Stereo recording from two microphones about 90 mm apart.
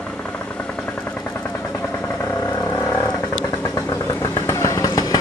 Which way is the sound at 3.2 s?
45° left (ahead or behind).